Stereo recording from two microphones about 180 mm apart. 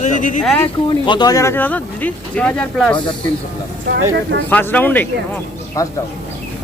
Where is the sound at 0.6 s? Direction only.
25° left (ahead or behind); by 2.9 s 5° left (ahead or behind).